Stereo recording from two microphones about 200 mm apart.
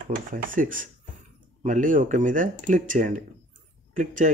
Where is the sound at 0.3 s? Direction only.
40° right (ahead or behind).